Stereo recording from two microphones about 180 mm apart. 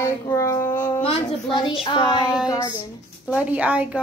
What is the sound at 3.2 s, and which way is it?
Speech, 5° right (ahead or behind).